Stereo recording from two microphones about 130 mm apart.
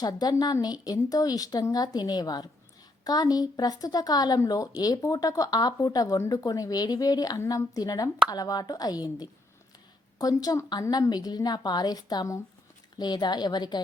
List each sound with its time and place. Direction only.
0.0 s a woman's voice: 30° left (ahead or behind)